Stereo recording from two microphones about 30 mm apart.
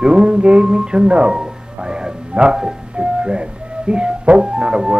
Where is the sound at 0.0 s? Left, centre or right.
Right.